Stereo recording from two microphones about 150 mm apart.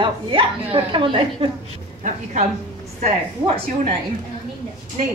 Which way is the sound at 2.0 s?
55° right (ahead or behind).